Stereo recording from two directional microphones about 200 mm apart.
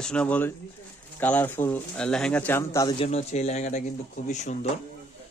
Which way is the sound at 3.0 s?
35° left (ahead or behind).